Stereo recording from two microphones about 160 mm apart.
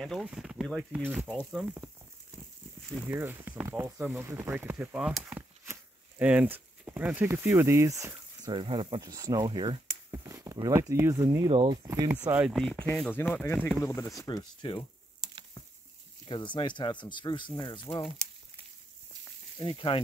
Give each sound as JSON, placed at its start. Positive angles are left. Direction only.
{"t": 0.0, "sound": "speech", "side_deg": 0}
{"t": 3.0, "sound": "speech", "side_deg": -15}
{"t": 8.5, "sound": "speech", "side_deg": -30}
{"t": 11.5, "sound": "speech", "side_deg": -35}
{"t": 11.8, "sound": "speech", "side_deg": -20}
{"t": 12.5, "sound": "speech", "side_deg": 5}
{"t": 16.3, "sound": "speech", "side_deg": 30}
{"t": 19.6, "sound": "speech", "side_deg": 35}